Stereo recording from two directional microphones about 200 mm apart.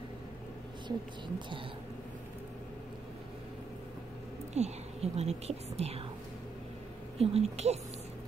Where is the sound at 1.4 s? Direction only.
25° right (ahead or behind).